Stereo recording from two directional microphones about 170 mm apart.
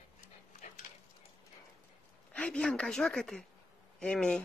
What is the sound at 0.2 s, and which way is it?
Dog, 50° left (ahead or behind).